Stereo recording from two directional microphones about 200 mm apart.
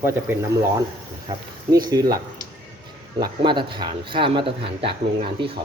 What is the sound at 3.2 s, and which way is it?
Speech, 25° right (ahead or behind).